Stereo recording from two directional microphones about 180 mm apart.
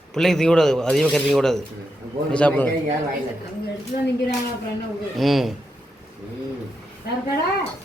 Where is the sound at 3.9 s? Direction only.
50° left (ahead or behind).